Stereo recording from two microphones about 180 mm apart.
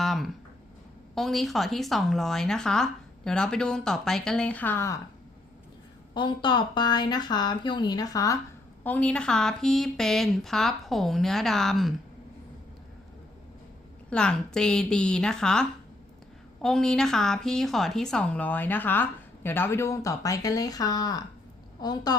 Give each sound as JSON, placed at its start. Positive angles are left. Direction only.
{"t": 0.0, "sound": "a sound", "side_deg": 0}
{"t": 1.1, "sound": "speech", "side_deg": 0}
{"t": 6.1, "sound": "speech", "side_deg": 25}
{"t": 8.8, "sound": "speech", "side_deg": 10}
{"t": 14.1, "sound": "a woman's voice", "side_deg": 5}